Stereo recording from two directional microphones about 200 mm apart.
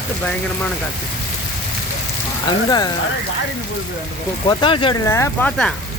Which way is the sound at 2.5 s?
20° left (ahead or behind).